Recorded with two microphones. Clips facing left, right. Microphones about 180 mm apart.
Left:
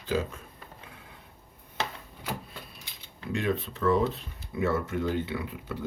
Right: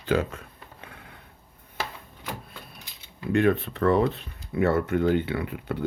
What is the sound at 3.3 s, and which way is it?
Speech, 60° right (ahead or behind).